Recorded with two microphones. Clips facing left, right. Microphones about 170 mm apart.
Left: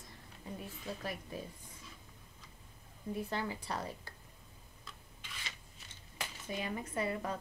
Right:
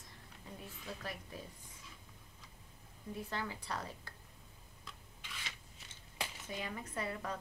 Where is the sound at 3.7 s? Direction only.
15° left (ahead or behind).